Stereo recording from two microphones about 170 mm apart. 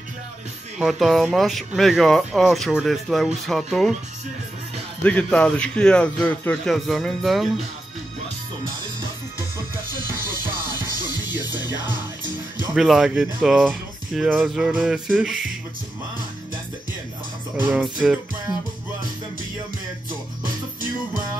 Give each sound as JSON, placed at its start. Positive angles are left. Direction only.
{"t": 0.7, "sound": "speech", "side_deg": 0}
{"t": 5.0, "sound": "speech", "side_deg": 5}
{"t": 11.1, "sound": "music", "side_deg": 25}
{"t": 12.7, "sound": "speech", "side_deg": 0}
{"t": 17.6, "sound": "speech", "side_deg": -10}